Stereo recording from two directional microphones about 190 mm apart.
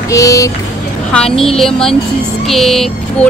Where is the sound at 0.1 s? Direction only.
15° left (ahead or behind).